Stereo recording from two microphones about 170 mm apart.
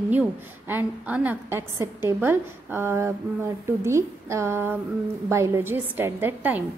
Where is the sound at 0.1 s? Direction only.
10° right (ahead or behind).